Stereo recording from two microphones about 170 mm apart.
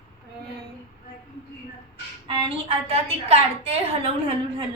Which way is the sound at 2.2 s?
30° right (ahead or behind).